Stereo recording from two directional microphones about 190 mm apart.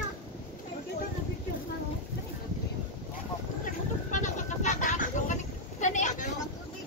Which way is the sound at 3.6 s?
40° left (ahead or behind).